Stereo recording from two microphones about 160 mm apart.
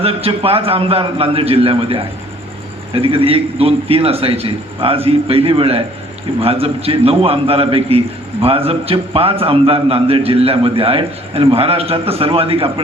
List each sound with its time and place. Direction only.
0.0 s a man's voice: 35° right (ahead or behind)